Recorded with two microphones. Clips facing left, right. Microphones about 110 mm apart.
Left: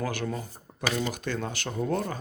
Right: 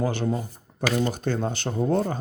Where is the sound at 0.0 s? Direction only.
25° right (ahead or behind).